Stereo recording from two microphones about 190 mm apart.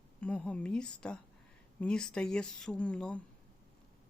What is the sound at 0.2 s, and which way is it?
Speech, 5° left (ahead or behind).